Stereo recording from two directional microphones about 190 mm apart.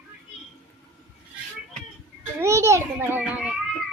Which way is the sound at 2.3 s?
15° right (ahead or behind).